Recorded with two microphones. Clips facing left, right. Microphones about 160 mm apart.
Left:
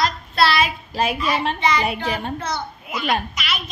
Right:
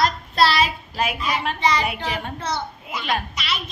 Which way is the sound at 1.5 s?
35° right (ahead or behind).